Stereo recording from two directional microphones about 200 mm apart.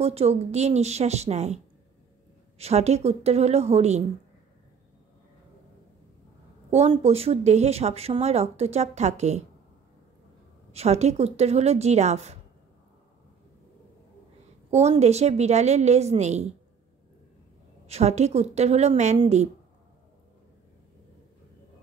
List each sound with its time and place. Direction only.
0.0 s speech: 30° right (ahead or behind)
2.6 s speech: 30° right (ahead or behind)
6.7 s speech: 30° right (ahead or behind)
10.7 s speech: 30° right (ahead or behind)
14.7 s speech: 30° right (ahead or behind)
17.8 s speech: 30° right (ahead or behind)